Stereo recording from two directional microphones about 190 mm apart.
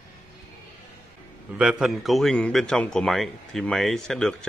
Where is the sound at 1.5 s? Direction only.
5° right (ahead or behind).